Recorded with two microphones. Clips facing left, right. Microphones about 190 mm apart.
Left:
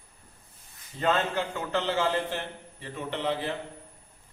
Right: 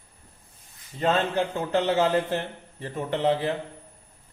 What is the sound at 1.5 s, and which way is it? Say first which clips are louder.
A man's voice: right 6 dB; 40° right (ahead or behind).